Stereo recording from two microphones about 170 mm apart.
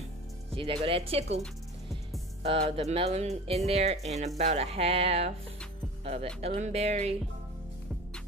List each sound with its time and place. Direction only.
0.5 s speech: 35° right (ahead or behind)
2.4 s speech: 35° right (ahead or behind)